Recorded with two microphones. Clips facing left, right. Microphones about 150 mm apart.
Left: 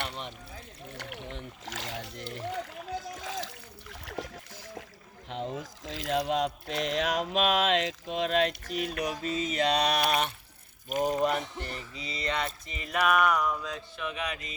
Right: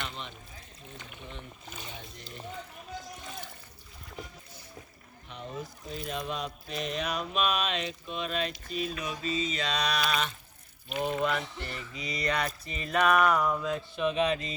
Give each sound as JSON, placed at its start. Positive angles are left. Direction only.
{"t": 0.0, "sound": "a sound", "side_deg": 65}
{"t": 0.9, "sound": "splash", "side_deg": 75}
{"t": 5.3, "sound": "speech", "side_deg": 90}
{"t": 10.8, "sound": "speech", "side_deg": 40}
{"t": 13.2, "sound": "speech", "side_deg": 0}
{"t": 13.9, "sound": "music", "side_deg": -25}